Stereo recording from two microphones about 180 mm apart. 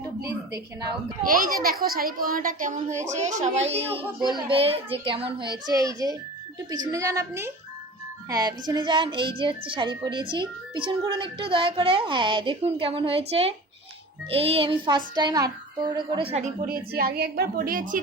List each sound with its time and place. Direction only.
0.3 s a woman's voice: 20° right (ahead or behind)
1.2 s a woman's voice: 50° right (ahead or behind)